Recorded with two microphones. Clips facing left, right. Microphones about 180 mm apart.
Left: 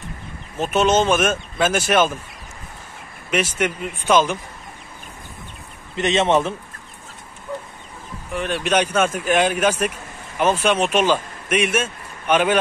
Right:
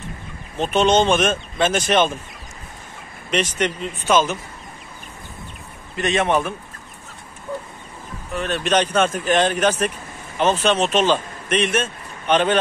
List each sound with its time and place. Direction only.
0.6 s speech: 5° left (ahead or behind)
3.3 s speech: 5° left (ahead or behind)
5.9 s a man's voice: 20° left (ahead or behind)
8.3 s a man's voice: 10° left (ahead or behind)